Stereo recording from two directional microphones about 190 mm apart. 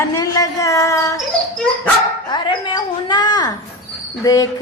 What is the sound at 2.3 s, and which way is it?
A woman's voice, 25° left (ahead or behind).